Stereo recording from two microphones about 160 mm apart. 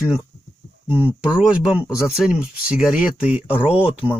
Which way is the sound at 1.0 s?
5° right (ahead or behind).